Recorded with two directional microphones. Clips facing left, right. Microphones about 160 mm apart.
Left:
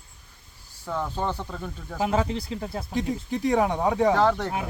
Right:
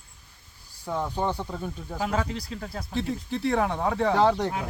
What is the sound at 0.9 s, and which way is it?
Speech, 15° right (ahead or behind).